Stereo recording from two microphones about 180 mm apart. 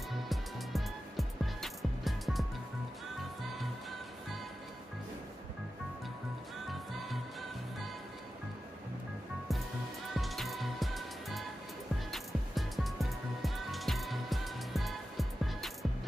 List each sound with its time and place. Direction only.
0.3 s music: centre (ahead or behind)
10.1 s music: centre (ahead or behind)